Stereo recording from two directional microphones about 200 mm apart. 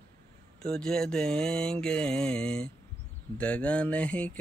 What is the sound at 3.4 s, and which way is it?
Mantra, 5° left (ahead or behind).